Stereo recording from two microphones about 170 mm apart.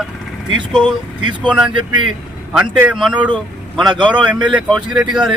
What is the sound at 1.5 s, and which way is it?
A man's voice, 5° right (ahead or behind).